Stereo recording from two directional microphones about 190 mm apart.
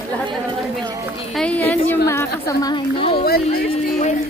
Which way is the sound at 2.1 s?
15° left (ahead or behind).